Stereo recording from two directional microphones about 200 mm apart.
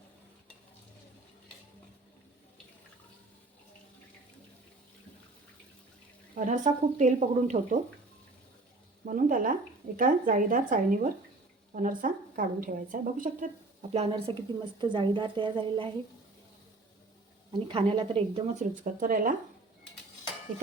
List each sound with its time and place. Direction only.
6.3 s speech: 40° right (ahead or behind)
9.0 s a woman's voice: 40° right (ahead or behind)
13.9 s a woman's voice: 30° right (ahead or behind)
17.7 s speech: 25° right (ahead or behind)